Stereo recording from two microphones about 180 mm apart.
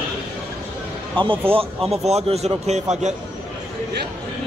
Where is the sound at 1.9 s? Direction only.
35° right (ahead or behind).